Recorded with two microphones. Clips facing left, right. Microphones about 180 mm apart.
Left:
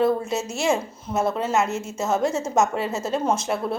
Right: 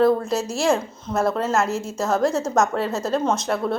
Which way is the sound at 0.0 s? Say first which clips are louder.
Right 3 dB; centre (ahead or behind).